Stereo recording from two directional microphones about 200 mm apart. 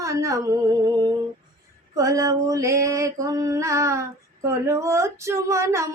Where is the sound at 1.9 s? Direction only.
15° right (ahead or behind).